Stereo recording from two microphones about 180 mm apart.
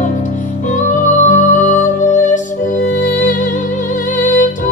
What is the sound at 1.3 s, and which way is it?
Music, 45° left (ahead or behind).